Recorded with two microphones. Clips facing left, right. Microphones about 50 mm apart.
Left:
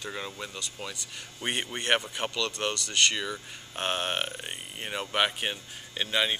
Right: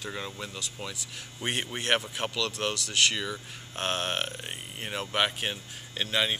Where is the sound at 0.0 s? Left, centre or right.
Centre.